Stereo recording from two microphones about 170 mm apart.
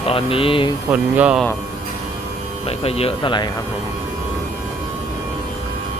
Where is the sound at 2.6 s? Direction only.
35° left (ahead or behind).